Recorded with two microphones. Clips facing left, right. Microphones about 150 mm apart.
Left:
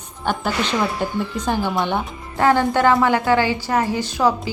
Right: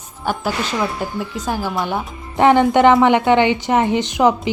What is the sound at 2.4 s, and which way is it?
A woman's voice, 20° right (ahead or behind).